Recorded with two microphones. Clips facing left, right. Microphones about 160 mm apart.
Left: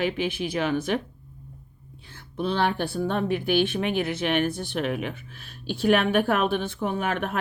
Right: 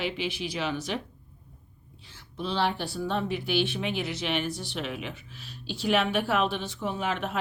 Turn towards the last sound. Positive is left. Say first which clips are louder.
# left 3 dB
turn(degrees=55)  # may be behind; listen again after turning